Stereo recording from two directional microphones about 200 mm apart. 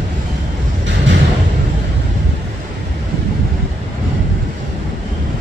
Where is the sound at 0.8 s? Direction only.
65° right (ahead or behind).